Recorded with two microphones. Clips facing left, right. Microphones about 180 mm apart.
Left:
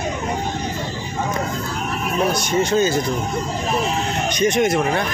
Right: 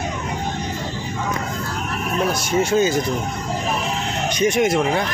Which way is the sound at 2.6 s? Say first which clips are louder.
Even; 10° right (ahead or behind).